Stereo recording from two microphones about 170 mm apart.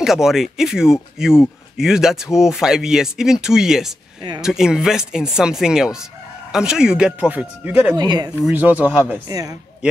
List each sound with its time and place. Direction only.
0.0 s speech: centre (ahead or behind)
7.9 s speech: 25° right (ahead or behind)
8.4 s speech: 10° right (ahead or behind)
9.3 s speech: 20° right (ahead or behind)